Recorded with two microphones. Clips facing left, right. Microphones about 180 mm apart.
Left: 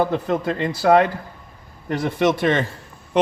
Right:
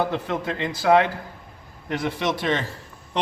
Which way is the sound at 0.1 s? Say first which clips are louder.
Left 5 dB; 40° left (ahead or behind).